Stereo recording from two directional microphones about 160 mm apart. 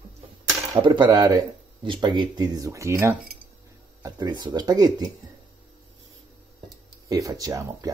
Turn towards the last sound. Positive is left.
turn(degrees=-20)  # may be behind; listen again after turning